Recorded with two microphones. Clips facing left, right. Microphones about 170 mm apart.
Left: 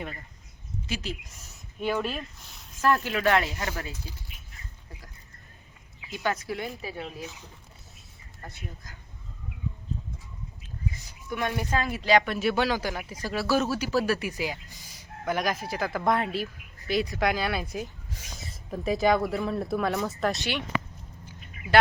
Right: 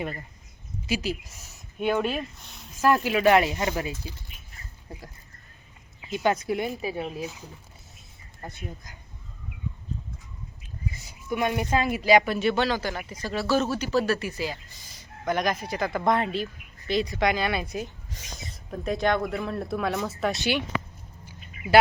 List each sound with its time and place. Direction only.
0.9 s speech: 10° right (ahead or behind)
4.9 s speech: 30° right (ahead or behind)
8.4 s speech: 20° right (ahead or behind)
11.3 s speech: 10° right (ahead or behind); by 14.6 s 15° left (ahead or behind)
15.2 s speech: 5° left (ahead or behind)